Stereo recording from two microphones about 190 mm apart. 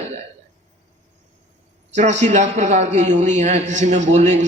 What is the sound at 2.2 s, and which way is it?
A man's voice, 40° right (ahead or behind).